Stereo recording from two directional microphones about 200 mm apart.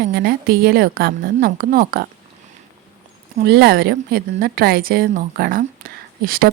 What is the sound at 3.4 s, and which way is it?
A woman's voice, 55° right (ahead or behind).